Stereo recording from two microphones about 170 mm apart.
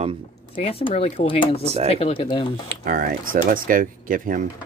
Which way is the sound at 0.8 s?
40° left (ahead or behind).